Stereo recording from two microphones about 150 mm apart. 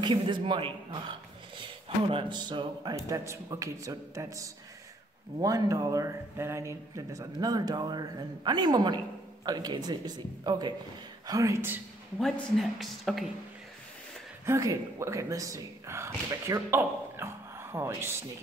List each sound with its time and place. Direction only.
0.0 s a man's voice: 30° right (ahead or behind); by 11.8 s 15° right (ahead or behind)
12.2 s a woman's voice: centre (ahead or behind)
14.4 s speech: 20° right (ahead or behind)